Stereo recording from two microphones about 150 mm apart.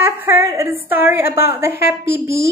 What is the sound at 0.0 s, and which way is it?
A woman's voice, 15° right (ahead or behind).